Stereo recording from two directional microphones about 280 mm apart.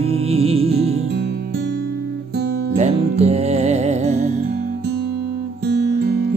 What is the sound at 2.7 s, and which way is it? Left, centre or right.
Music, right.